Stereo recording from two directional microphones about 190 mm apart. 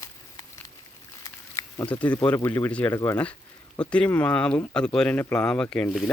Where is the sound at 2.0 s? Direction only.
10° left (ahead or behind).